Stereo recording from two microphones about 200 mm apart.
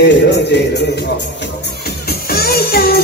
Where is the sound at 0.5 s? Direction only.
60° left (ahead or behind).